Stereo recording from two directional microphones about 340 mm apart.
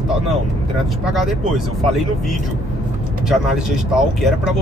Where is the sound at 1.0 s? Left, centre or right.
Centre.